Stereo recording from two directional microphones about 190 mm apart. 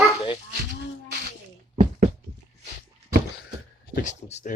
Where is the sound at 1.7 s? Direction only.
35° right (ahead or behind).